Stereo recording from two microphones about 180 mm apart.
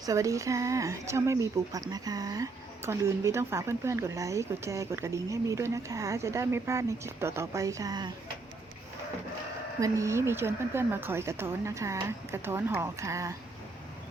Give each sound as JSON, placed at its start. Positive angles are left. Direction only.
{"t": 0.0, "sound": "speech", "side_deg": -20}
{"t": 9.8, "sound": "speech", "side_deg": -15}